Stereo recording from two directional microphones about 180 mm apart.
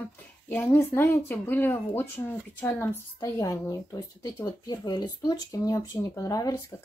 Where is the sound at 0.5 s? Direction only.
10° left (ahead or behind).